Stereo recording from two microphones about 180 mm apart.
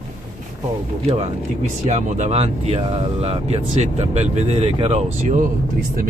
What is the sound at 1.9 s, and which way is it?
Speech, 40° right (ahead or behind).